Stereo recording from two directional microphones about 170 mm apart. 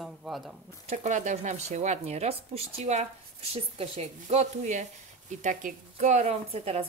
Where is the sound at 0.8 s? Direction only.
45° right (ahead or behind).